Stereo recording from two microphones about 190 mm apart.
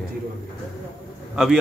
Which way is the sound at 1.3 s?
Centre (ahead or behind).